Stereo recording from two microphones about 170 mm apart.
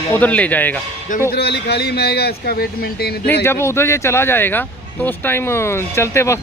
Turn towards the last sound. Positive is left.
turn(degrees=15)  # may be behind; listen again after turning